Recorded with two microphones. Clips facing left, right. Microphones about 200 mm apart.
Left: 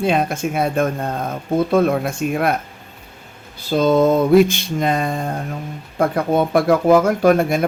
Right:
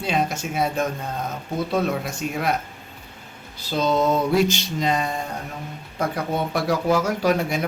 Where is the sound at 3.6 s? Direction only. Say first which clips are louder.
Left 6 dB; 55° left (ahead or behind).